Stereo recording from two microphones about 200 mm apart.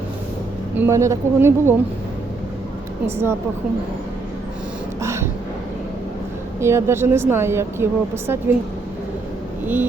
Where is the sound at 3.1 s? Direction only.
10° right (ahead or behind).